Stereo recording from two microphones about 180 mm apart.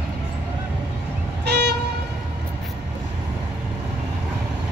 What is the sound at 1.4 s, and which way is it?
Vehicle, 65° right (ahead or behind).